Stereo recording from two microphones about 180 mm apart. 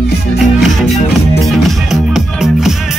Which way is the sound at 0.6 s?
Centre (ahead or behind).